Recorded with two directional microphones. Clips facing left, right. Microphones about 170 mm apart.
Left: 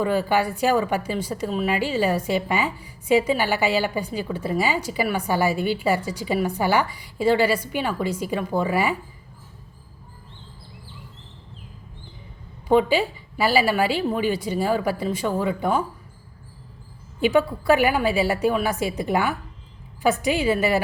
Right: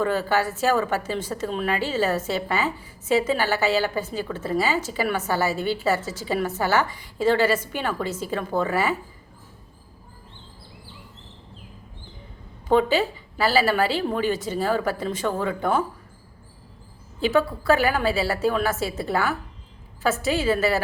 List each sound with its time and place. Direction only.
0.0 s a woman's voice: 10° left (ahead or behind)
12.6 s a woman's voice: 10° left (ahead or behind)
17.2 s a woman's voice: 15° left (ahead or behind)